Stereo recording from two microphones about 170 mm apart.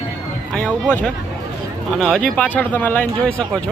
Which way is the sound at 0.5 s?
5° left (ahead or behind).